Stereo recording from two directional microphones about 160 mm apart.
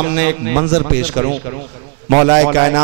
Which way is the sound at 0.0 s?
15° right (ahead or behind).